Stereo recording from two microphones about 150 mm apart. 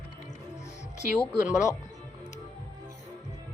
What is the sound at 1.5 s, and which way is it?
Speech, 20° left (ahead or behind).